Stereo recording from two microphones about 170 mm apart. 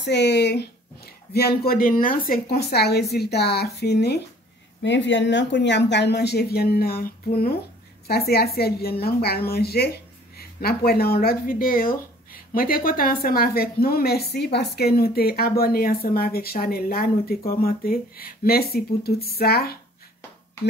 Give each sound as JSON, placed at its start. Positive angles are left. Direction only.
{"t": 0.0, "sound": "speech", "side_deg": 85}
{"t": 4.8, "sound": "speech", "side_deg": 90}
{"t": 8.1, "sound": "speech", "side_deg": 65}